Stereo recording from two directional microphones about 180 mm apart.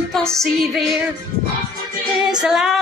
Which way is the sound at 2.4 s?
5° right (ahead or behind).